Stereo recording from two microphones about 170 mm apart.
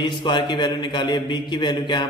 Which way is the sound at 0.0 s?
25° left (ahead or behind).